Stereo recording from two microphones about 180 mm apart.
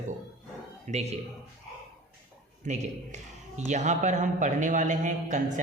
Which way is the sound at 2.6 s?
40° right (ahead or behind).